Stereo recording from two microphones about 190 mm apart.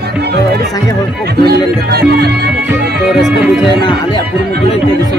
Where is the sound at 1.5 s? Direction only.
55° right (ahead or behind).